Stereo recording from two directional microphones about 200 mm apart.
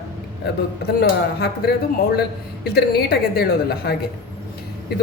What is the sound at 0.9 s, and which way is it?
A woman's voice, 50° left (ahead or behind).